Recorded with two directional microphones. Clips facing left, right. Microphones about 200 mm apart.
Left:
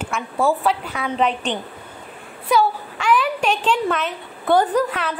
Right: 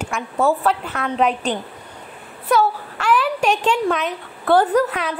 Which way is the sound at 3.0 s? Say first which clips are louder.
Right 1 dB; 5° right (ahead or behind).